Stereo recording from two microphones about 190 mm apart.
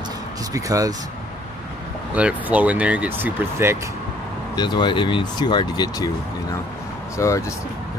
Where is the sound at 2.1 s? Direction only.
5° right (ahead or behind).